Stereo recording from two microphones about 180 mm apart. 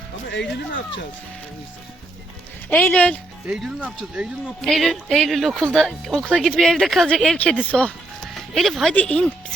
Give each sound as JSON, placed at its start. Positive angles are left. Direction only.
{"t": 0.3, "sound": "speech", "side_deg": 80}
{"t": 2.6, "sound": "speech", "side_deg": 10}
{"t": 3.4, "sound": "speech", "side_deg": -5}